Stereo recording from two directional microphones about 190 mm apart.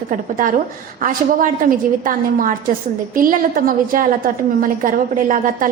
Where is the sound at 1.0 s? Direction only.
45° right (ahead or behind).